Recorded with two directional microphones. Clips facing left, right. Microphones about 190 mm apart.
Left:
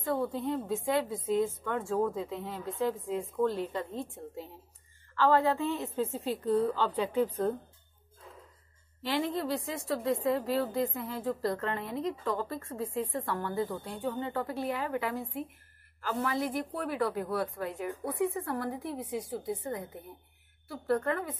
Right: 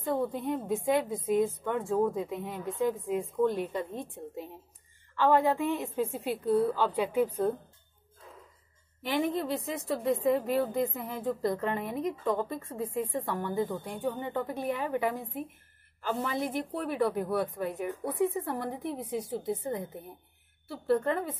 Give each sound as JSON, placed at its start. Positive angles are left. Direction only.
{"t": 0.0, "sound": "a woman's voice", "side_deg": -15}
{"t": 9.0, "sound": "a woman's voice", "side_deg": -15}